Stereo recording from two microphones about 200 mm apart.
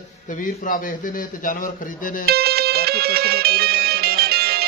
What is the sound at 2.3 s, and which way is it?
Music, 50° right (ahead or behind).